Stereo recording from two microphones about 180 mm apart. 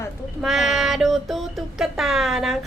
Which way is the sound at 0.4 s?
Centre (ahead or behind).